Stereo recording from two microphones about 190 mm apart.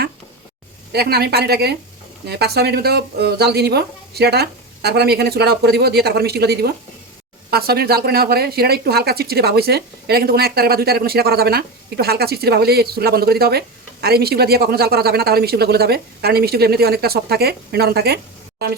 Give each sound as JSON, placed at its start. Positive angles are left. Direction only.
{"t": 0.9, "sound": "speech", "side_deg": -55}